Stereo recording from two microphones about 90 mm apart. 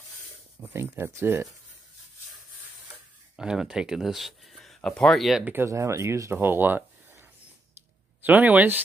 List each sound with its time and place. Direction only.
0.7 s speech: 25° right (ahead or behind)
3.3 s speech: 10° right (ahead or behind)
5.4 s speech: 25° right (ahead or behind)
6.3 s a sound: 20° right (ahead or behind)
8.2 s speech: 20° right (ahead or behind)